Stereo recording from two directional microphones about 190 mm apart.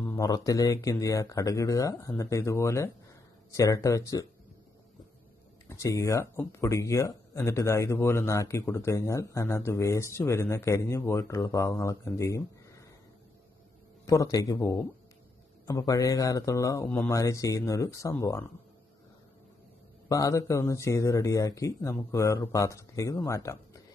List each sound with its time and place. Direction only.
0.0 s speech: 15° left (ahead or behind)
5.7 s speech: 15° left (ahead or behind)
14.0 s speech: 20° left (ahead or behind)
20.1 s speech: 15° left (ahead or behind)